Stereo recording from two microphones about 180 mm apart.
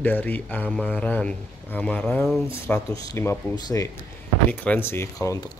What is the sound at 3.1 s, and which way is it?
Speech, 20° left (ahead or behind).